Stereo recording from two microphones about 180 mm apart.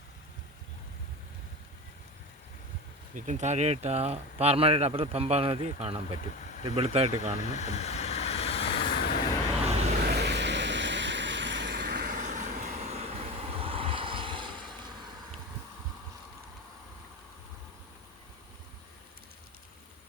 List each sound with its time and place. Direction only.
3.2 s speech: 40° right (ahead or behind)
7.3 s vehicle: 40° left (ahead or behind)
9.6 s vehicle: 35° right (ahead or behind)
10.0 s vehicle: 65° right (ahead or behind)
12.1 s vehicle: 45° right (ahead or behind); by 14.5 s 25° right (ahead or behind)